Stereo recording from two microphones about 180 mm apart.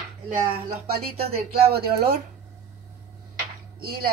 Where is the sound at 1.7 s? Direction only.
60° right (ahead or behind).